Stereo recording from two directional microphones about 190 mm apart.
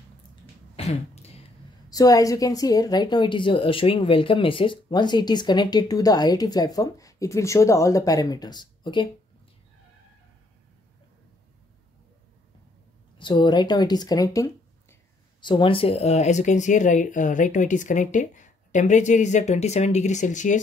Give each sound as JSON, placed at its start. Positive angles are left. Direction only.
{"t": 0.7, "sound": "a sound", "side_deg": 35}
{"t": 1.9, "sound": "speech", "side_deg": 20}
{"t": 13.2, "sound": "speech", "side_deg": 25}